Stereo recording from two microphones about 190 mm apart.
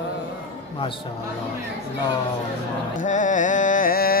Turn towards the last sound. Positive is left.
turn(degrees=50)  # may be behind; listen again after turning